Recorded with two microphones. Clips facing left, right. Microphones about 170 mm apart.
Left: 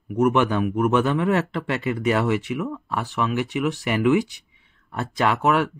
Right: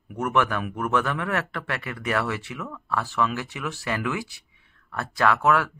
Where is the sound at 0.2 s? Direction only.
20° left (ahead or behind).